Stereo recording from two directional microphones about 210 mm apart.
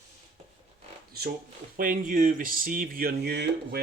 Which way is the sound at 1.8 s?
40° right (ahead or behind).